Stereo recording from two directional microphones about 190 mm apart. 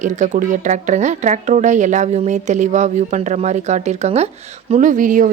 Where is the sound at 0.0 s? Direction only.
40° right (ahead or behind).